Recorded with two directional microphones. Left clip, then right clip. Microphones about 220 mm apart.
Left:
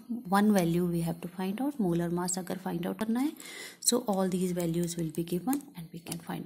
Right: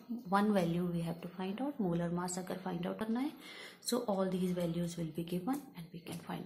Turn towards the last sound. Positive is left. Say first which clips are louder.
# left 6 dB
turn(degrees=45)  # may be behind; listen again after turning